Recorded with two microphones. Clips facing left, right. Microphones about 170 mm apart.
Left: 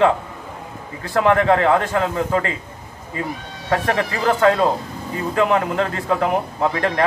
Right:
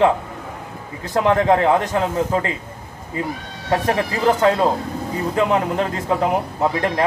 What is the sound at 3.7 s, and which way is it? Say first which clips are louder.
A man's voice: right 1 dB; 20° right (ahead or behind).